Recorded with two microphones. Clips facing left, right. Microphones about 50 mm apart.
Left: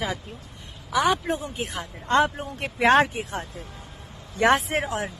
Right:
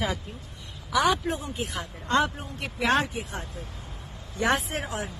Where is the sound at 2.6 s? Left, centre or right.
Left.